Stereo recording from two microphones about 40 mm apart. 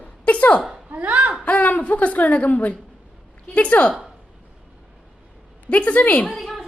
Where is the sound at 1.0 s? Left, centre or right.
Right.